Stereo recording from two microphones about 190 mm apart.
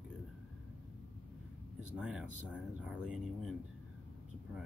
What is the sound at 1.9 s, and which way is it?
Speech, 5° right (ahead or behind).